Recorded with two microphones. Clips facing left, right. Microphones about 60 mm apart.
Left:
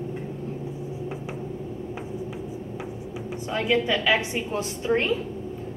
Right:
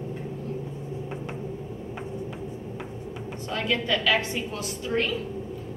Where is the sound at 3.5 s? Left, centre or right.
Centre.